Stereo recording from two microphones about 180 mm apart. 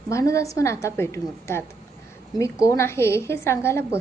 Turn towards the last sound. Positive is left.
turn(degrees=15)  # may be behind; listen again after turning